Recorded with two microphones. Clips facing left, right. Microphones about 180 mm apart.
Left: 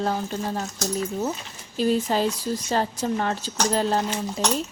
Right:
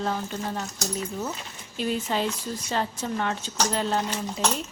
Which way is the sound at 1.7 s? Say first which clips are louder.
Left 5 dB; 40° left (ahead or behind).